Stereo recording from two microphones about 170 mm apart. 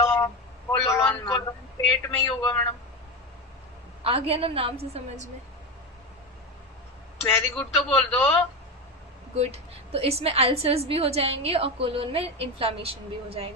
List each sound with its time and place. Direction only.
0.7 s a sound: 20° left (ahead or behind)
2.0 s speech: 20° left (ahead or behind)
4.0 s a woman's voice: 35° right (ahead or behind)
7.3 s speech: 10° left (ahead or behind)
9.4 s a woman's voice: 35° right (ahead or behind)